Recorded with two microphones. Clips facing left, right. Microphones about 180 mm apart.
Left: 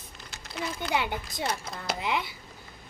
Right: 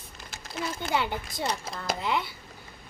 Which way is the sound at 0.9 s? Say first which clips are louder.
Right 1 dB; 20° left (ahead or behind).